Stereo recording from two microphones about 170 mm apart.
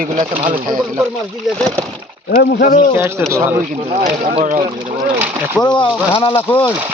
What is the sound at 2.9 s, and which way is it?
Speech, 15° right (ahead or behind).